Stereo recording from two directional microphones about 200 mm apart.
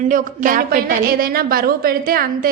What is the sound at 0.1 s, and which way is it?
A woman's voice, 40° right (ahead or behind).